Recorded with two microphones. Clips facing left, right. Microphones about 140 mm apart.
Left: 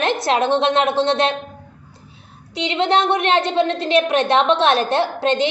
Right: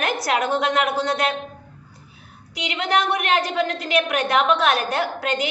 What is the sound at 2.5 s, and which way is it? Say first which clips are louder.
A woman's voice: left 5 dB; 25° left (ahead or behind).